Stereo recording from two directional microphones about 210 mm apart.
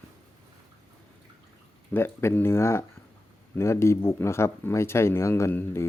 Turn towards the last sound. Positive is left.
turn(degrees=10)  # may be behind; listen again after turning